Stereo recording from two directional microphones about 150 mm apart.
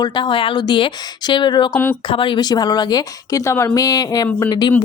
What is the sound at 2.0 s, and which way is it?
Speech, 35° left (ahead or behind).